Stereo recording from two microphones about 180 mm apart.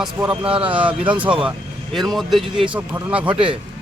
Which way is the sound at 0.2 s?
5° right (ahead or behind).